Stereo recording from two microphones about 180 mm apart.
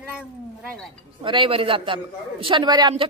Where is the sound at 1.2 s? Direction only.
30° right (ahead or behind).